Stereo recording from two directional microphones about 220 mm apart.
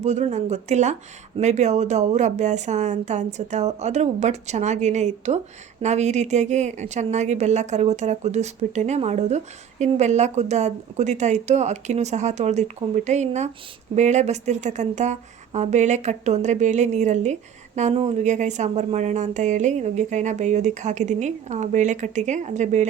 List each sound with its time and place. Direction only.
0.0 s a woman's voice: 30° right (ahead or behind)